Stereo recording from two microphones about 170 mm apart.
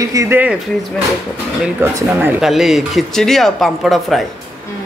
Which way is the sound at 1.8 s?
15° right (ahead or behind).